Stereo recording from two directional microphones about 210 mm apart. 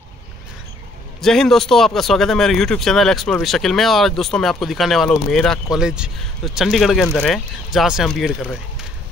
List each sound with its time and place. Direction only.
1.2 s speech: centre (ahead or behind)